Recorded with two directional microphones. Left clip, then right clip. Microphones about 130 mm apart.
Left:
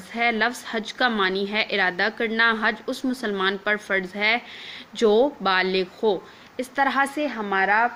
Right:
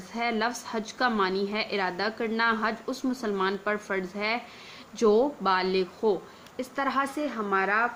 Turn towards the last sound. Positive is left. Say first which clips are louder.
# left 5 dB
turn(degrees=40)  # may be behind; listen again after turning